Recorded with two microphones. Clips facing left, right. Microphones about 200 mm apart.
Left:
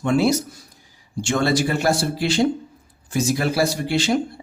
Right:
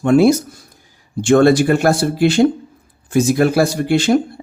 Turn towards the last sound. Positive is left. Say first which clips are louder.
# right 6 dB
turn(degrees=-50)  # may be behind; listen again after turning